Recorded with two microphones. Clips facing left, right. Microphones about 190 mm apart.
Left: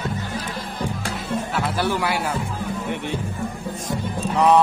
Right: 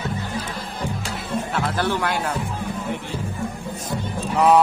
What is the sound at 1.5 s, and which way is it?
Music, 10° left (ahead or behind).